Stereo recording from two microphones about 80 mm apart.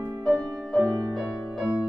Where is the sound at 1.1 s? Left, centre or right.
Centre.